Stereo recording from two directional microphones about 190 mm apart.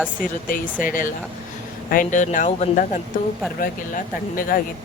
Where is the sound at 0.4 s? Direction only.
45° left (ahead or behind).